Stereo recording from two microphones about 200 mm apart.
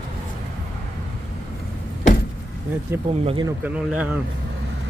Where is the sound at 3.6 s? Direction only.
5° right (ahead or behind).